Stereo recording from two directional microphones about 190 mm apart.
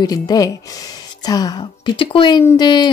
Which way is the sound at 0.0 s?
20° left (ahead or behind).